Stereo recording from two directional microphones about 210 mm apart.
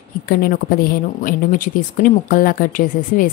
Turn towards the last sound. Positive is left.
turn(degrees=40)  # may be behind; listen again after turning